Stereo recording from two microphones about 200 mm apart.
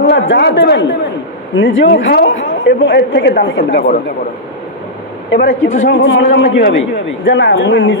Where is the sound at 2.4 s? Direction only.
70° left (ahead or behind).